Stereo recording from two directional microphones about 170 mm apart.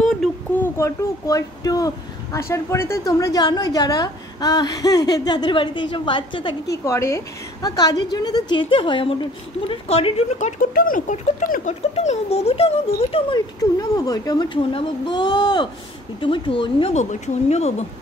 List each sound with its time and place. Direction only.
0.0 s a sound: 5° left (ahead or behind)
0.7 s a woman's voice: 20° left (ahead or behind)
6.8 s a woman's voice: 15° left (ahead or behind); by 10.5 s 35° left (ahead or behind)
10.6 s speech: 55° left (ahead or behind); by 13.4 s 35° left (ahead or behind)
13.6 s a woman's voice: 20° left (ahead or behind)
16.9 s speech: 45° left (ahead or behind)